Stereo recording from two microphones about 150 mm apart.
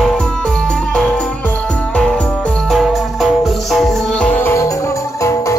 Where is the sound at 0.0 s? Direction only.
5° left (ahead or behind).